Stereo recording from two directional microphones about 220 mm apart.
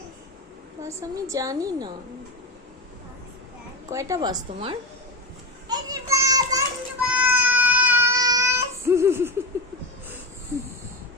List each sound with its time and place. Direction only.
0.8 s a woman's voice: 15° right (ahead or behind)
3.8 s a woman's voice: 15° right (ahead or behind)
5.6 s children playing: 15° right (ahead or behind)
7.0 s child singing: 5° right (ahead or behind)